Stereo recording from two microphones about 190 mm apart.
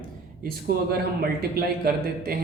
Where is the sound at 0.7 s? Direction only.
50° right (ahead or behind).